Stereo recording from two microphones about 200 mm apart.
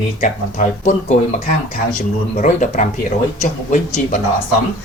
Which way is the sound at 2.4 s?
40° left (ahead or behind).